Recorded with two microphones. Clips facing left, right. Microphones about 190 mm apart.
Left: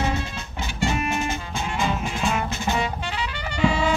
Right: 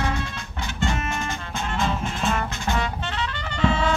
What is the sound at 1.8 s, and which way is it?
Music, 5° left (ahead or behind).